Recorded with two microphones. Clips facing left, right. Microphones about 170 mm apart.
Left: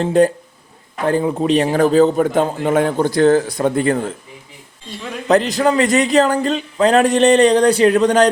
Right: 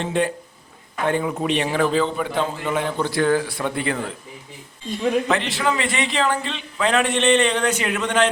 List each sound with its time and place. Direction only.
0.0 s a man's voice: 40° left (ahead or behind)
5.3 s a man's voice: 40° left (ahead or behind)